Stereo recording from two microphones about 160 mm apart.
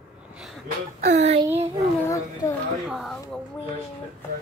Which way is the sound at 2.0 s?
20° left (ahead or behind).